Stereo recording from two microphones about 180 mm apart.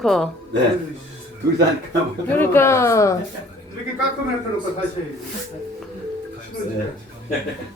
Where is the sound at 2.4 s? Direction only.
15° left (ahead or behind).